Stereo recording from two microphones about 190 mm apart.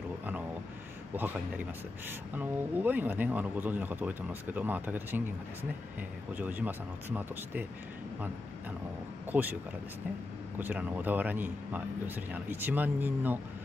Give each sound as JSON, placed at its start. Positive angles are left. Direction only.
{"t": 1.1, "sound": "speech", "side_deg": -10}
{"t": 9.3, "sound": "speech", "side_deg": -10}
{"t": 10.6, "sound": "speech", "side_deg": -10}